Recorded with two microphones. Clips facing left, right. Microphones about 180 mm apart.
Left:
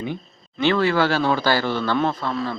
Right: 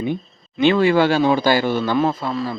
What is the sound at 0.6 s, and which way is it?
A man's voice, 15° right (ahead or behind).